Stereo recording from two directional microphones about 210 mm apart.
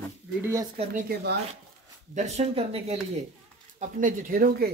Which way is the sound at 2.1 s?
30° right (ahead or behind).